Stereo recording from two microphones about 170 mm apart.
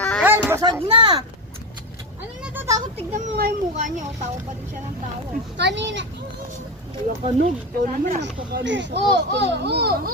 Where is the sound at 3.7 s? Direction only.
45° right (ahead or behind).